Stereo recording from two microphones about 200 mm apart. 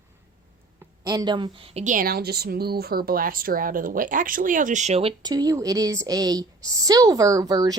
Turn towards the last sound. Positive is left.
turn(degrees=-20)  # may be behind; listen again after turning